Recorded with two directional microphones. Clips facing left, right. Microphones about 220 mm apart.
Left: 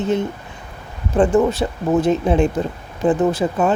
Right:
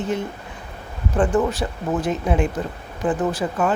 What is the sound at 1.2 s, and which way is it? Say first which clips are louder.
Speech: left 5 dB; 25° left (ahead or behind).